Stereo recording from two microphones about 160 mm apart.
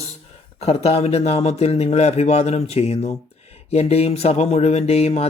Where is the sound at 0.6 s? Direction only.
40° left (ahead or behind).